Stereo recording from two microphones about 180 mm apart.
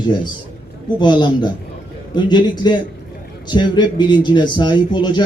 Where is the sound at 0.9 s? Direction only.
25° left (ahead or behind).